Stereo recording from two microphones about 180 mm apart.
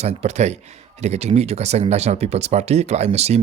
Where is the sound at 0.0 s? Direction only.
35° right (ahead or behind).